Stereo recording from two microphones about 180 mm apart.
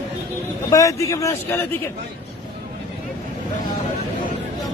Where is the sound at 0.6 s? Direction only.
20° left (ahead or behind).